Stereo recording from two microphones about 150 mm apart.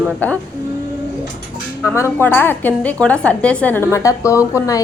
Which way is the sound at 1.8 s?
20° left (ahead or behind).